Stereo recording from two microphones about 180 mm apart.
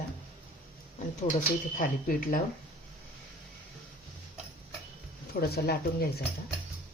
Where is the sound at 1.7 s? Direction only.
50° left (ahead or behind).